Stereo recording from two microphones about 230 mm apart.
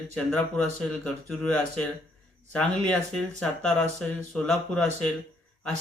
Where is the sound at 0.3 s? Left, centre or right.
Centre.